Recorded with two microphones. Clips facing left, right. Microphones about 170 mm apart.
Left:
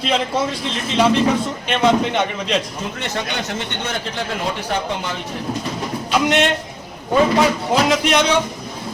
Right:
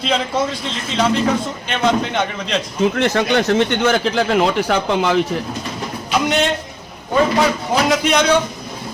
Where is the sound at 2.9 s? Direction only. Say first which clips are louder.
Right 7 dB; 85° right.